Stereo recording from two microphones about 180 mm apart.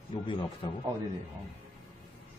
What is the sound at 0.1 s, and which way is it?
Speech, 30° left (ahead or behind).